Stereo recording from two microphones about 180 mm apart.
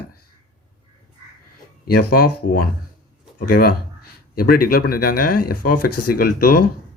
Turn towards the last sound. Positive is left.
turn(degrees=55)  # may be behind; listen again after turning